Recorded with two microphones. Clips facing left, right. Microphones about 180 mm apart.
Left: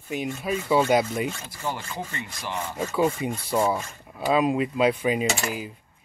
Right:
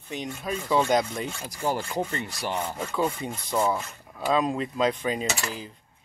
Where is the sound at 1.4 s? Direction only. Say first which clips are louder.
Right 4 dB; 35° right (ahead or behind).